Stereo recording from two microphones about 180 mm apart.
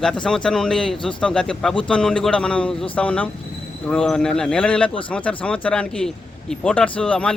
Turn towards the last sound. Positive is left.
turn(degrees=5)  # may be behind; listen again after turning